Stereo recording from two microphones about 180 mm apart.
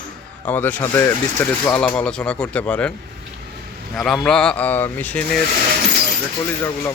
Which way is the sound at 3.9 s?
Centre (ahead or behind).